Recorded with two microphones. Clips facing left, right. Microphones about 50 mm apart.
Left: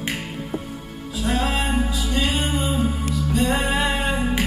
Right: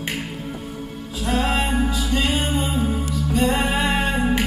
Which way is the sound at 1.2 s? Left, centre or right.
Right.